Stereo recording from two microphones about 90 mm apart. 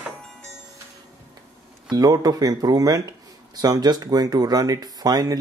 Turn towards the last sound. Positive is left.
turn(degrees=-45)  # may be behind; listen again after turning